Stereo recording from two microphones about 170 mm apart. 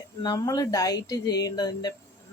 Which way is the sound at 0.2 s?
20° left (ahead or behind).